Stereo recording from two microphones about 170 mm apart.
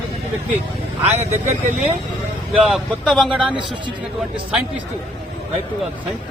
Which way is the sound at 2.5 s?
Centre (ahead or behind).